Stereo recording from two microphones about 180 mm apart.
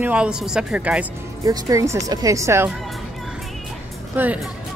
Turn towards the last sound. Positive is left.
turn(degrees=-10)  # may be behind; listen again after turning